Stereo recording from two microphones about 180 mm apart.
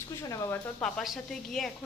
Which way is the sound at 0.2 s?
20° left (ahead or behind).